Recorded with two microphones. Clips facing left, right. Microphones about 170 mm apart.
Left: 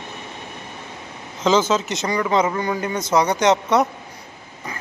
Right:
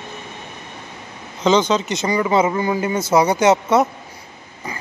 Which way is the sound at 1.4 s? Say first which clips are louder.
Right 2 dB; 5° left (ahead or behind).